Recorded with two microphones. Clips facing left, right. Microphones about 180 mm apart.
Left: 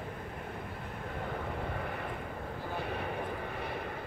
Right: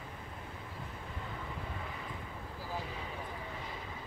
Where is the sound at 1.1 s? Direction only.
60° left (ahead or behind).